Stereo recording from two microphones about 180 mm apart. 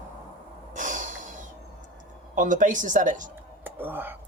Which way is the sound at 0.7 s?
45° right (ahead or behind).